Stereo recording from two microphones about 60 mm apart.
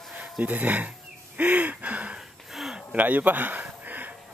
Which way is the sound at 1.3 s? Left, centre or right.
Right.